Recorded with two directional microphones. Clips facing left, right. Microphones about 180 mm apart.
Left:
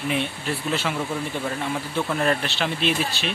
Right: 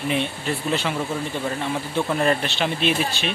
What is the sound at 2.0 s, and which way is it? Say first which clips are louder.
Speech: right 2 dB; 5° right (ahead or behind).